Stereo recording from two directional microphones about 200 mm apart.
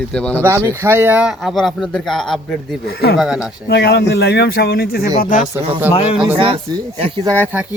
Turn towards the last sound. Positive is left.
turn(degrees=-10)  # may be behind; listen again after turning